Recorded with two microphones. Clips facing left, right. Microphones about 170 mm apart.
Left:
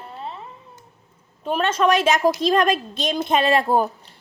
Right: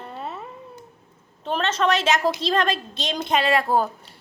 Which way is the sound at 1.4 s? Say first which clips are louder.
Left 3 dB; 10° left (ahead or behind).